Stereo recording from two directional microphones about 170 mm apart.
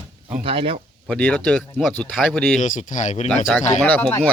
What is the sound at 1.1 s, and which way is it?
Speech, 5° left (ahead or behind).